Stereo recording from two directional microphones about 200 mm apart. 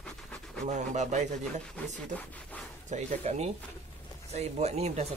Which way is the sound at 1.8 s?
10° left (ahead or behind).